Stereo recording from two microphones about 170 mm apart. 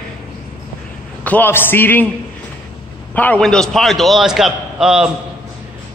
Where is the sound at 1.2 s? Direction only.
10° left (ahead or behind).